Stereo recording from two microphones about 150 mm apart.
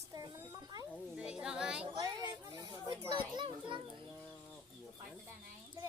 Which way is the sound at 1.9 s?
25° right (ahead or behind).